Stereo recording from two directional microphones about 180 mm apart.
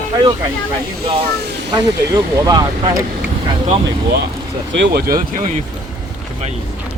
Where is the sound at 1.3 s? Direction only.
65° right (ahead or behind).